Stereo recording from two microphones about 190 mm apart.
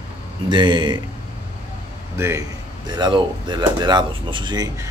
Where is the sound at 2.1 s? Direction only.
15° right (ahead or behind).